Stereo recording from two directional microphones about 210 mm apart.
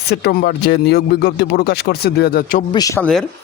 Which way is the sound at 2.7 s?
15° left (ahead or behind).